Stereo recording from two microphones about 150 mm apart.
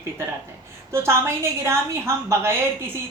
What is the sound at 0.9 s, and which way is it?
A woman's voice, 15° right (ahead or behind).